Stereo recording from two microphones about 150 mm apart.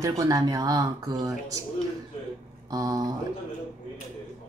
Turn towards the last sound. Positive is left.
turn(degrees=-25)  # may be behind; listen again after turning